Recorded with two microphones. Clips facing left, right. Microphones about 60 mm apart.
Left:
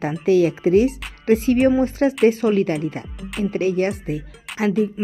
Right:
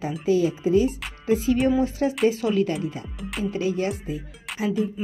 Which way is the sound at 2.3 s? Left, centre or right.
Left.